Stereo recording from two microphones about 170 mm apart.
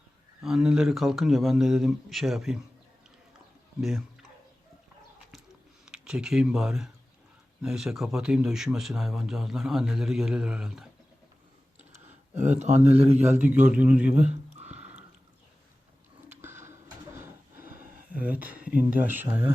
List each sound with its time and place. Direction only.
0.4 s speech: 5° right (ahead or behind)
3.8 s speech: 5° right (ahead or behind)
5.8 s speech: 5° right (ahead or behind)
11.9 s a sound: 40° right (ahead or behind)
12.4 s speech: 45° right (ahead or behind)
13.4 s speech: 10° right (ahead or behind)
14.1 s a sound: 45° right (ahead or behind)
16.3 s a sound: 15° right (ahead or behind)
18.1 s speech: 10° right (ahead or behind)